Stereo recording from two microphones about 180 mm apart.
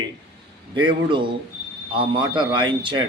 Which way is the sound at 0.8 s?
25° right (ahead or behind).